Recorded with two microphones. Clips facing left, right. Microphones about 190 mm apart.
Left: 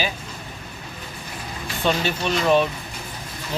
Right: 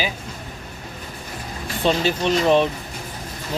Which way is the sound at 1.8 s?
30° right (ahead or behind).